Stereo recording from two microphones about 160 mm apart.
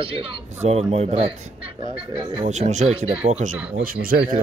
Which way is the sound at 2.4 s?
45° right (ahead or behind).